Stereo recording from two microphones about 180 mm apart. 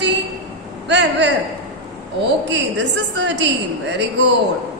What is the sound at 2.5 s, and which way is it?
A woman's voice, 75° right (ahead or behind).